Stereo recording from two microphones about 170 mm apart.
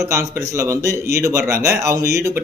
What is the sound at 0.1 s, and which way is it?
Speech, 15° right (ahead or behind).